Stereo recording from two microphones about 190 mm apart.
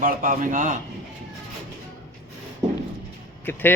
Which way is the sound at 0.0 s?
45° right (ahead or behind).